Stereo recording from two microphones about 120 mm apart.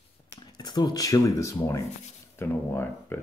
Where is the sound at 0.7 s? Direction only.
35° left (ahead or behind).